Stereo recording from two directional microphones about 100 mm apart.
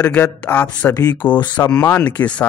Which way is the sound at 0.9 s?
40° left (ahead or behind).